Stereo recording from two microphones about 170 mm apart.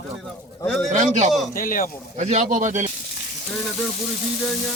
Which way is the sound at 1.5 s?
55° left (ahead or behind).